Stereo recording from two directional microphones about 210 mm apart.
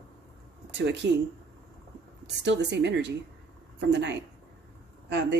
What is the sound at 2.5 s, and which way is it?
Speech, 55° right (ahead or behind).